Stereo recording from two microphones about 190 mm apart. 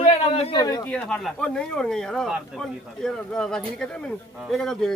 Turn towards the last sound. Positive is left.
turn(degrees=0)  # may be behind; listen again after turning